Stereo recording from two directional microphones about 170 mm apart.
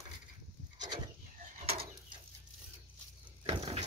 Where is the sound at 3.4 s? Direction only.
35° right (ahead or behind).